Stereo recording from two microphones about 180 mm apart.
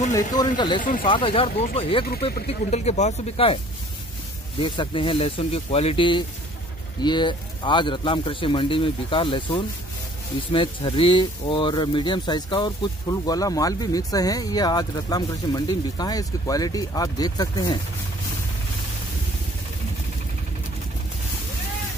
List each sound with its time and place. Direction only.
0.1 s speech: 20° left (ahead or behind)
2.0 s speech: 55° left (ahead or behind)
2.4 s speech: 35° left (ahead or behind)
4.6 s speech: 25° left (ahead or behind)